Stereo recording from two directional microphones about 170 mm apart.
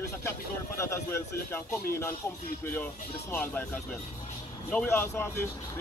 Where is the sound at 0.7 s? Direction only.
15° left (ahead or behind).